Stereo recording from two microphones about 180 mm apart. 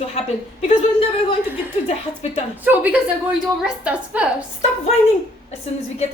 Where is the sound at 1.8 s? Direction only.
40° left (ahead or behind).